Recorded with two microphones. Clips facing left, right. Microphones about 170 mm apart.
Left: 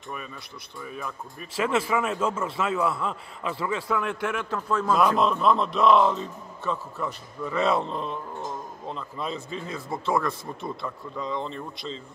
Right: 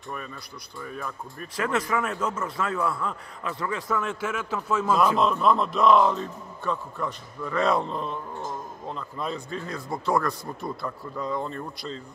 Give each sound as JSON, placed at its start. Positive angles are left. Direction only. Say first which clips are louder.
{"t": 0.8, "sound": "a man's voice", "louder": "even", "side_deg": 5}
{"t": 1.6, "sound": "speech", "louder": "left 2 dB", "side_deg": 25}
{"t": 3.8, "sound": "a man's voice", "louder": "left 1 dB", "side_deg": 0}